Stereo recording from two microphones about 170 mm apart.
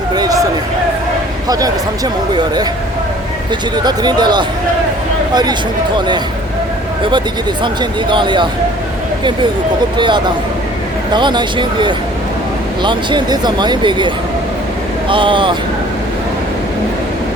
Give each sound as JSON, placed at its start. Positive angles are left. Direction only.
{"t": 0.1, "sound": "a sound", "side_deg": -20}
{"t": 1.5, "sound": "speech", "side_deg": -20}
{"t": 3.8, "sound": "speech", "side_deg": -25}
{"t": 7.6, "sound": "speech", "side_deg": -30}
{"t": 10.0, "sound": "speech", "side_deg": -25}
{"t": 15.1, "sound": "speech", "side_deg": -30}